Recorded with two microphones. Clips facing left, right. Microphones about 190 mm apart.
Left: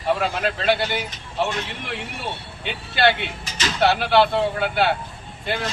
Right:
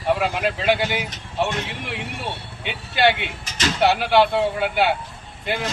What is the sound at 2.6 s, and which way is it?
Speech, 10° right (ahead or behind).